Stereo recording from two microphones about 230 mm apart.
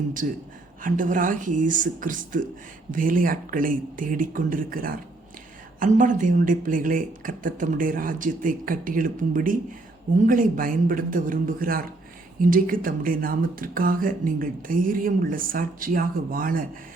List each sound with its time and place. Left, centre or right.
0.8 s speech: right